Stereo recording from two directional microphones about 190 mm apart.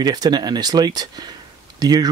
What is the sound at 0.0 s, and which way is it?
Speech, 20° right (ahead or behind).